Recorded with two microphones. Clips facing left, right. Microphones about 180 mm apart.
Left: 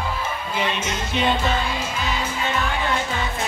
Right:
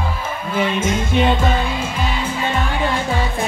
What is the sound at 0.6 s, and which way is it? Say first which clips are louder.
Music: right 7 dB; 50° right (ahead or behind).